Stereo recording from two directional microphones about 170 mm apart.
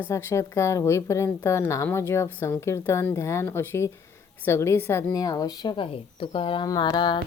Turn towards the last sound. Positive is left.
turn(degrees=25)  # may be behind; listen again after turning